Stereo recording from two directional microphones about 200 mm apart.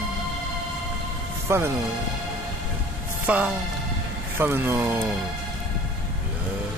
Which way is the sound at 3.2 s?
5° right (ahead or behind).